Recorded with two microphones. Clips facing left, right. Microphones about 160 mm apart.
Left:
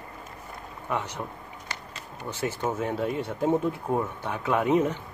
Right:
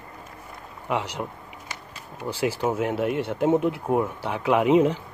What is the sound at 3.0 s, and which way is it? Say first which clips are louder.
Speech: right 4 dB; 70° right (ahead or behind).